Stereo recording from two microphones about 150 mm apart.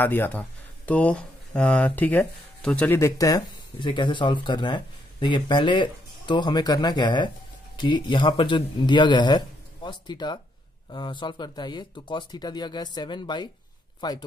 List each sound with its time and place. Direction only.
0.0 s speech: 15° left (ahead or behind); by 14.2 s 30° left (ahead or behind)